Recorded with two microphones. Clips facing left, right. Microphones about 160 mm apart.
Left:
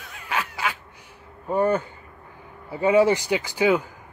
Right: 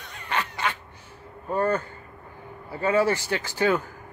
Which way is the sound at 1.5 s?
15° left (ahead or behind).